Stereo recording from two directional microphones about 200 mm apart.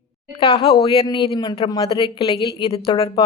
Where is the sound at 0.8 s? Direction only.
25° left (ahead or behind).